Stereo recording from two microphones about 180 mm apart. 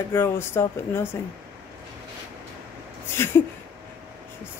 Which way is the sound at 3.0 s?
15° left (ahead or behind).